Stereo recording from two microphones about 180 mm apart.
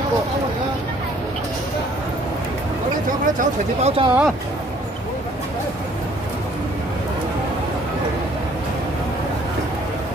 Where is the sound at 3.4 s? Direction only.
35° right (ahead or behind).